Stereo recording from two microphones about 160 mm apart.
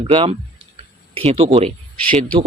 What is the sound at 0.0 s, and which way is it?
Speech, 35° right (ahead or behind).